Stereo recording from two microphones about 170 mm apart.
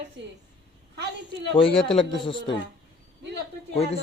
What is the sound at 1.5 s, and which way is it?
Speech, 30° left (ahead or behind).